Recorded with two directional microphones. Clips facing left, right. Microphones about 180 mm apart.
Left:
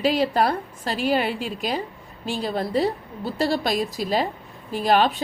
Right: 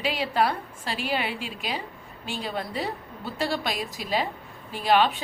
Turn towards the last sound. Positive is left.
turn(degrees=40)  # may be behind; listen again after turning